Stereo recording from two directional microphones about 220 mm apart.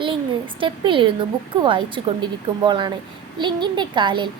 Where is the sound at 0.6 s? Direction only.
25° right (ahead or behind).